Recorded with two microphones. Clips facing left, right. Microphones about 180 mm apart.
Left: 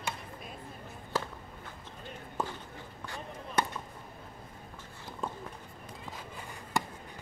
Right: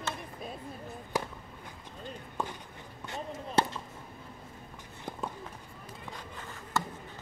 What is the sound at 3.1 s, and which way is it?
Basketball bounce, 30° right (ahead or behind).